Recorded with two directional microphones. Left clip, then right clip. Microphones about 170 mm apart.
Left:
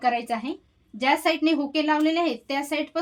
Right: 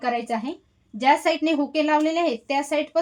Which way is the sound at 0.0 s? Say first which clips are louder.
Left 1 dB; 40° right (ahead or behind).